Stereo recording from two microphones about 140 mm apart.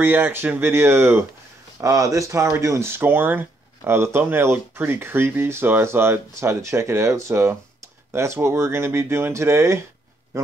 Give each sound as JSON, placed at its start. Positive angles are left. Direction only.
{"t": 0.0, "sound": "speech", "side_deg": -15}